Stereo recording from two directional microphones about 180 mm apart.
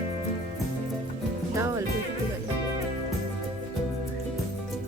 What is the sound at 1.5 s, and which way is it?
Music, 15° right (ahead or behind).